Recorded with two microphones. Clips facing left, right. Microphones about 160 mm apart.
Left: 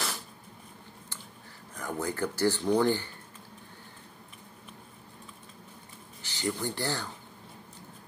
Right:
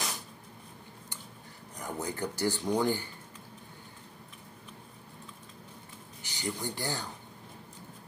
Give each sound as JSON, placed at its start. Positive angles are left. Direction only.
{"t": 1.8, "sound": "speech", "side_deg": -20}
{"t": 6.2, "sound": "speech", "side_deg": -15}